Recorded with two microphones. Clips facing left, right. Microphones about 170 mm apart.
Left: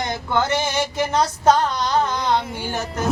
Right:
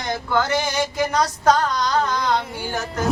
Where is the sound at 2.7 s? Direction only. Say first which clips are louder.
Right 1 dB; centre (ahead or behind).